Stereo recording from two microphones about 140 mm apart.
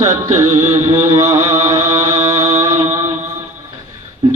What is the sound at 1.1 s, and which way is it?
Mantra, 20° right (ahead or behind).